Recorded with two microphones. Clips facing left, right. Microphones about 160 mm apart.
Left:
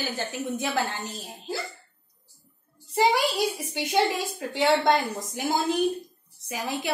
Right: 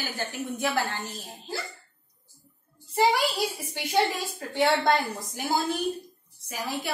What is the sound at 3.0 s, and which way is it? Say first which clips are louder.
Speech: left 1 dB; 20° left (ahead or behind).